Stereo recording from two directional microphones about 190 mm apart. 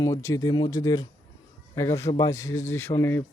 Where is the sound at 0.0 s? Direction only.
15° left (ahead or behind).